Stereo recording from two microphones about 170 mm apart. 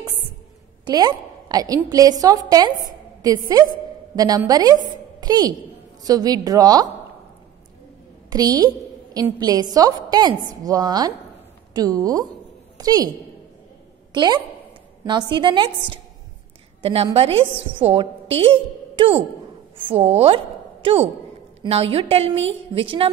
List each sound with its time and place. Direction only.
0.8 s a woman's voice: 25° right (ahead or behind)
4.1 s a woman's voice: 20° right (ahead or behind)
8.3 s a woman's voice: 20° right (ahead or behind)
14.1 s a woman's voice: 25° right (ahead or behind)
16.8 s a woman's voice: 35° right (ahead or behind)